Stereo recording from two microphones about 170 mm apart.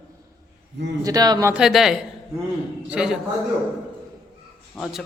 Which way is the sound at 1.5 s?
Centre (ahead or behind).